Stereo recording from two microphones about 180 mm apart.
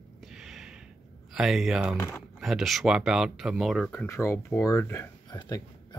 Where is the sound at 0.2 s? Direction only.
Centre (ahead or behind).